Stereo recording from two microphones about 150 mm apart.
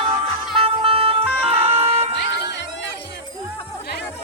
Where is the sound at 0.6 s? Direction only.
35° right (ahead or behind).